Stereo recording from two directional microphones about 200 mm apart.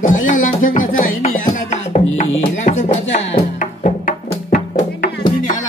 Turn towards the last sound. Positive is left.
turn(degrees=45)  # may be behind; listen again after turning